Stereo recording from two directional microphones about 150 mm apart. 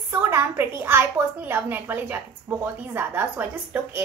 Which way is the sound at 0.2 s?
15° right (ahead or behind).